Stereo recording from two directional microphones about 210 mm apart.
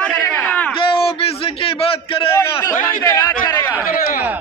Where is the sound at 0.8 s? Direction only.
25° left (ahead or behind).